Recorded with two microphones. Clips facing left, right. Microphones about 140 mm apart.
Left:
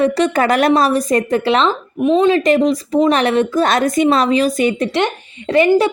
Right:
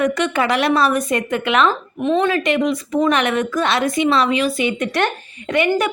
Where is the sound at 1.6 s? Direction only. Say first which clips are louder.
Left 3 dB; 15° left (ahead or behind).